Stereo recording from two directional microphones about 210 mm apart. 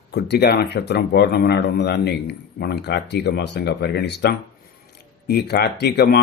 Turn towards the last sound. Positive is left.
turn(degrees=50)  # may be behind; listen again after turning